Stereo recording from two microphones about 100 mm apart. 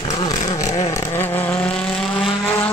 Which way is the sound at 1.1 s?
15° left (ahead or behind).